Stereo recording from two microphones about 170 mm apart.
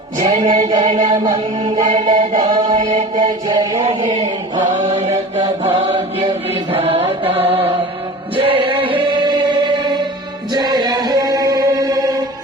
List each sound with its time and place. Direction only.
0.2 s music: 30° right (ahead or behind)
3.2 s mantra: 25° right (ahead or behind)
4.0 s chant: 30° right (ahead or behind)
5.6 s chant: 35° right (ahead or behind); by 12.2 s 20° right (ahead or behind)